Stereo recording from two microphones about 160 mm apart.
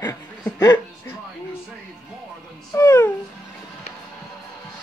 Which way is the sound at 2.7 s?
15° left (ahead or behind).